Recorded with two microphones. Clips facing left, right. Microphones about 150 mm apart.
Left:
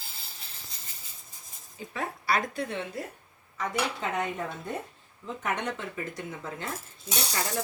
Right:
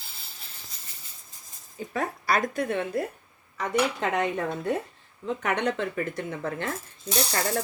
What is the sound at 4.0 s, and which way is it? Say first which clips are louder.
Speech: right 5 dB; 75° right (ahead or behind).